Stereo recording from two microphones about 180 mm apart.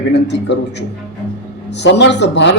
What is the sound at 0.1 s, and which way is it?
Speech, 75° left (ahead or behind).